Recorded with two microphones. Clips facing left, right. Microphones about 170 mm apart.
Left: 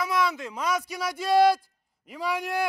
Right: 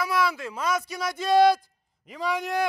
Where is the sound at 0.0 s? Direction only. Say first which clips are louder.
Right 1 dB; 20° left (ahead or behind).